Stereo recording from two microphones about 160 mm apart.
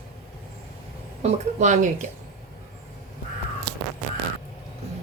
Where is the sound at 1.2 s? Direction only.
50° right (ahead or behind).